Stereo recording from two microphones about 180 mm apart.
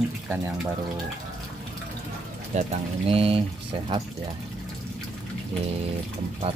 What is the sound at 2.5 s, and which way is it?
Speech, 35° right (ahead or behind).